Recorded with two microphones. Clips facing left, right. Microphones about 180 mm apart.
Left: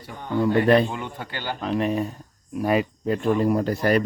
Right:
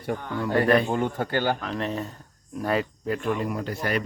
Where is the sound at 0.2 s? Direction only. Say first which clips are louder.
Left 7 dB; 20° left (ahead or behind).